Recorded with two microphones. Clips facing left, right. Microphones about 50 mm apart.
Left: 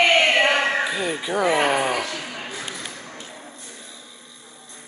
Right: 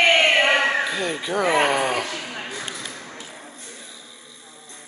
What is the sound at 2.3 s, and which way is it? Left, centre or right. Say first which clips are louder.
Ping: right 1 dB; centre.